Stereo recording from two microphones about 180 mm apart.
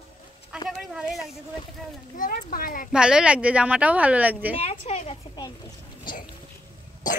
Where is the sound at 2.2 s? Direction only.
50° left (ahead or behind).